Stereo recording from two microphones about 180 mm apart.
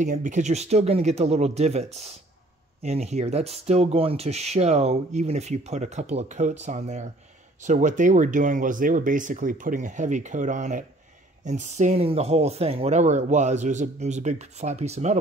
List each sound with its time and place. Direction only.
0.0 s speech: 45° right (ahead or behind)